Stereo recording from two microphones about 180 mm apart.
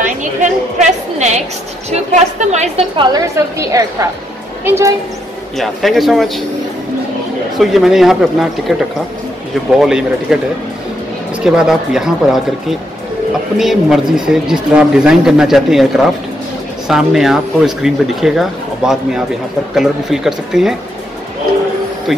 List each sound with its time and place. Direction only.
0.2 s a sound: 45° right (ahead or behind)
2.4 s a woman's voice: 40° right (ahead or behind)
3.0 s a woman's voice: 20° right (ahead or behind)
5.6 s speech: centre (ahead or behind)
7.5 s speech: centre (ahead or behind)
11.4 s speech: 5° right (ahead or behind)